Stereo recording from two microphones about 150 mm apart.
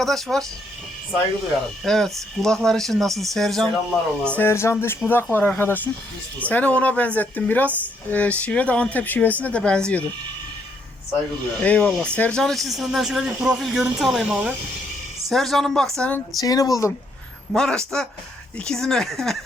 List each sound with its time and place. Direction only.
0.0 s speech: centre (ahead or behind)
1.8 s speech: centre (ahead or behind)
11.6 s speech: 10° left (ahead or behind)
16.4 s speech: 25° left (ahead or behind)
17.5 s speech: 5° left (ahead or behind)